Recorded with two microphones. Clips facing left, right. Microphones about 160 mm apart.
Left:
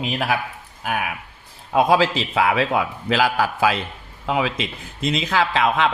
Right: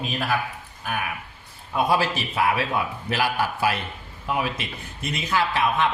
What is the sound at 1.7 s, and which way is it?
A man's voice, 90° left.